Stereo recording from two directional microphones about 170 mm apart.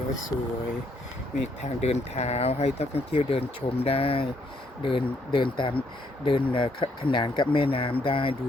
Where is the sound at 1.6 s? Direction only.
40° left (ahead or behind).